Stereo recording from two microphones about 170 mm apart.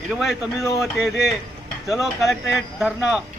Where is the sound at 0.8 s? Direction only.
Centre (ahead or behind).